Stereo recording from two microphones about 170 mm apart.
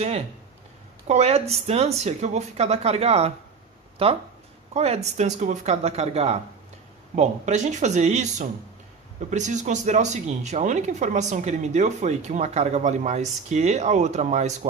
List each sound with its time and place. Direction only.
1.0 s speech: 40° right (ahead or behind)